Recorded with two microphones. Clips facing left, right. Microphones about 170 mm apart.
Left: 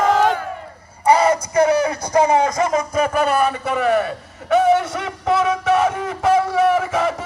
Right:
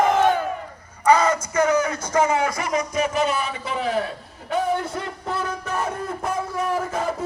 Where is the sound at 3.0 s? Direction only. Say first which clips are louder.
Left 5 dB; 60° left (ahead or behind); by 7.2 s 90° left.